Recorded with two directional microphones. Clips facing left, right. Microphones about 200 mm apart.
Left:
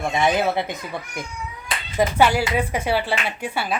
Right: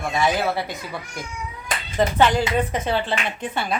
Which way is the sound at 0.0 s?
20° left (ahead or behind).